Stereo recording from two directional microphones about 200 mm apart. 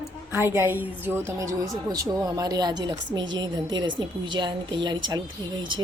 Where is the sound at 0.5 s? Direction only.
10° right (ahead or behind).